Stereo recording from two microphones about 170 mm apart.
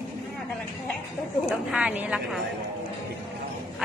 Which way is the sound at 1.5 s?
5° right (ahead or behind).